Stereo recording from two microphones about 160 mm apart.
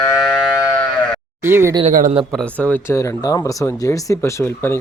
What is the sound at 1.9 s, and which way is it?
Speech, 55° right (ahead or behind).